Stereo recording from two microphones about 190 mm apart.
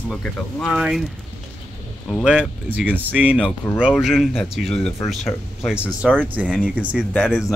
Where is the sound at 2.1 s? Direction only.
5° right (ahead or behind).